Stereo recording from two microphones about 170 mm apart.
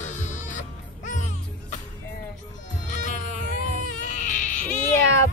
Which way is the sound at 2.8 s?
45° left (ahead or behind).